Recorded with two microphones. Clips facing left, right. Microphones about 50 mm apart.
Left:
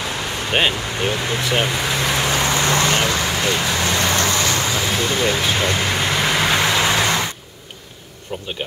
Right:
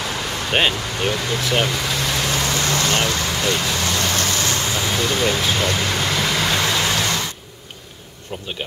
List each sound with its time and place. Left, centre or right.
0.5 s speech: centre
1.4 s vehicle: centre; by 4.6 s left
4.7 s vehicle: centre
8.3 s speech: centre